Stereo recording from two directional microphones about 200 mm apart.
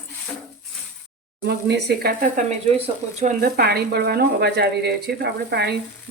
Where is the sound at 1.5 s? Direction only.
55° right (ahead or behind).